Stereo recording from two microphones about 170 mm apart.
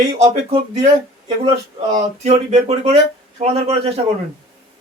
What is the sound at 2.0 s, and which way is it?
Speech, 40° right (ahead or behind).